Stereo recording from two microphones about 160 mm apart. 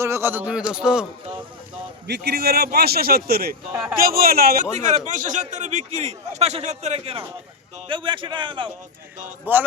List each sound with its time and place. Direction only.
0.0 s speech: 15° right (ahead or behind)
2.0 s a man's voice: 85° right; by 4.6 s 70° right (ahead or behind)
4.8 s a man's voice: 50° right (ahead or behind); by 8.7 s 30° right (ahead or behind)
9.5 s speech: 10° right (ahead or behind)